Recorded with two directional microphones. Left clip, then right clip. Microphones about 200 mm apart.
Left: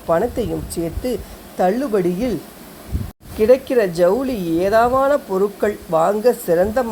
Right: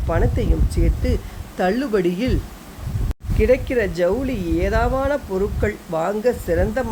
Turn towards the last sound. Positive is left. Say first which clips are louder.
# left 4 dB
turn(degrees=5)  # may be behind; listen again after turning